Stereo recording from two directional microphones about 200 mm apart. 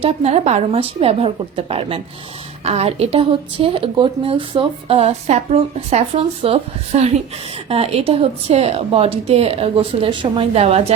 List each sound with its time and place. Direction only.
0.0 s speech: 30° right (ahead or behind)